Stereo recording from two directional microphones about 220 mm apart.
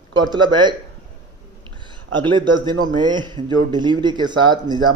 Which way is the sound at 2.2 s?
20° right (ahead or behind).